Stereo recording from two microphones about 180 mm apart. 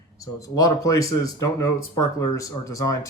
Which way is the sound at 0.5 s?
20° left (ahead or behind).